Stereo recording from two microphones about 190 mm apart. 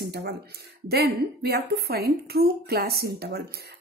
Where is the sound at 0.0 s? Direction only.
55° right (ahead or behind).